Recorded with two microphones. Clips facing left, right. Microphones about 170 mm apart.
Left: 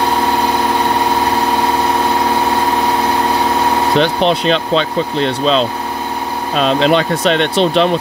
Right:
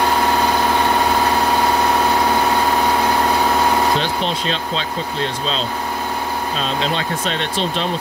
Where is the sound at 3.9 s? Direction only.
70° left (ahead or behind).